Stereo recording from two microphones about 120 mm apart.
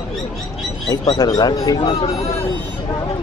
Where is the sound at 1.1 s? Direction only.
35° left (ahead or behind).